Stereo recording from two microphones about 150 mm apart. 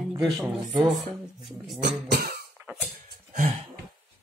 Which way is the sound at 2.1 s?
90° right.